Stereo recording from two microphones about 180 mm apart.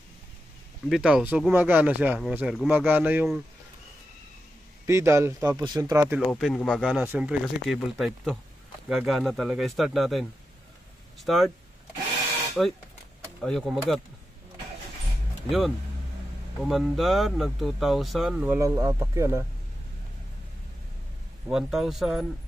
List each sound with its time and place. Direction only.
0.8 s speech: 5° right (ahead or behind)
4.8 s speech: 15° right (ahead or behind)
6.3 s speech: 5° left (ahead or behind)
7.0 s speech: 5° right (ahead or behind)
11.2 s speech: centre (ahead or behind)
12.6 s speech: centre (ahead or behind)
16.6 s speech: centre (ahead or behind)
21.5 s speech: 5° right (ahead or behind)